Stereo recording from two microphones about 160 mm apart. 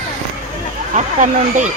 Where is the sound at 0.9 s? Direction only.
50° right (ahead or behind).